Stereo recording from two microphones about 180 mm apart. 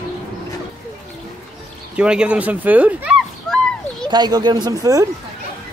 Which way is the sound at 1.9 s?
5° right (ahead or behind).